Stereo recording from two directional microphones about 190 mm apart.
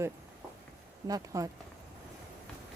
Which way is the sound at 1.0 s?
20° right (ahead or behind).